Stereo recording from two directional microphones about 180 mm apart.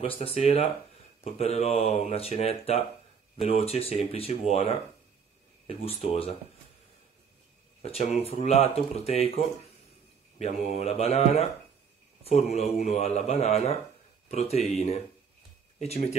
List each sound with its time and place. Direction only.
0.0 s speech: 30° left (ahead or behind)
7.8 s speech: 35° left (ahead or behind)
10.8 s speech: 35° left (ahead or behind)
15.8 s speech: 35° left (ahead or behind)